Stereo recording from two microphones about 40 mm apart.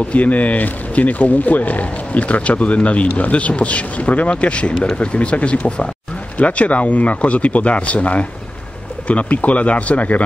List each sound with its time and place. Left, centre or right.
0.1 s speech: left